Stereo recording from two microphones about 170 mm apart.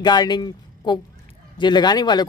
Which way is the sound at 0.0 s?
25° left (ahead or behind).